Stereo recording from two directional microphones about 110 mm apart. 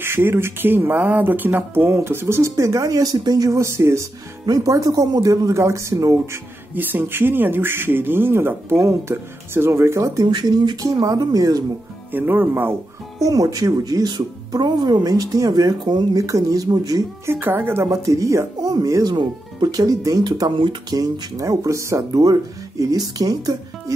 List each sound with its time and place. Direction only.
0.0 s speech: 20° right (ahead or behind)
6.7 s speech: 15° right (ahead or behind); by 11.6 s 35° right (ahead or behind)
12.1 s speech: 20° right (ahead or behind)
13.2 s speech: 30° right (ahead or behind)
17.3 s speech: 20° right (ahead or behind); by 23.5 s 35° right (ahead or behind)